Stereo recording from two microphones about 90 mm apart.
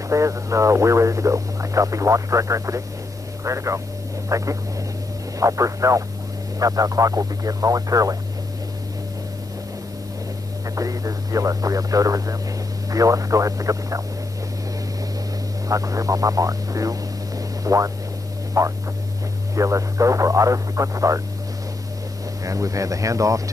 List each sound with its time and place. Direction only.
0.1 s speech: 35° right (ahead or behind)
10.8 s speech: 40° right (ahead or behind)
15.7 s speech: 40° right (ahead or behind)
22.4 s speech: 40° right (ahead or behind)